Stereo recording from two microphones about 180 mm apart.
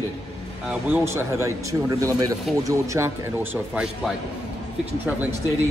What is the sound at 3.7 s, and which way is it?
Speech, 5° right (ahead or behind).